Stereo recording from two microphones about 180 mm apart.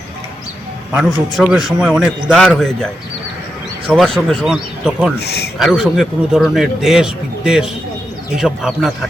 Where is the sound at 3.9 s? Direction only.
Centre (ahead or behind).